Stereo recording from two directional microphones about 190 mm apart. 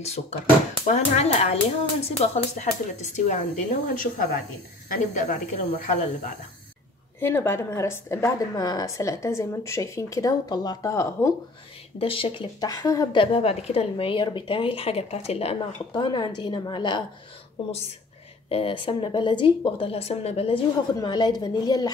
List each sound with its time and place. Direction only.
0.0 s a woman's voice: 35° left (ahead or behind)
7.2 s a woman's voice: 10° left (ahead or behind)
12.0 s a woman's voice: 30° left (ahead or behind)
18.5 s a woman's voice: 30° left (ahead or behind)